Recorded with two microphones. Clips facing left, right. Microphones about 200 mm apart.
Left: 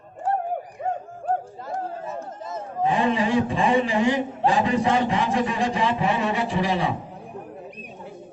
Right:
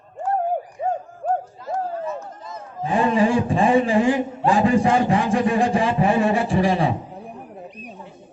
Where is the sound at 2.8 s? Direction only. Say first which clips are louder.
Right 3 dB; 40° right (ahead or behind).